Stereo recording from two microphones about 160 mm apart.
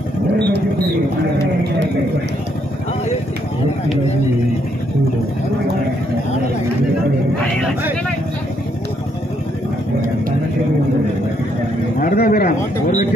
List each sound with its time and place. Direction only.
12.0 s speech: 60° left (ahead or behind)